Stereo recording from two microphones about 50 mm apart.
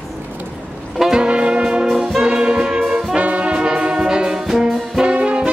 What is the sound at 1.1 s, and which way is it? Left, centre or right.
Music, right.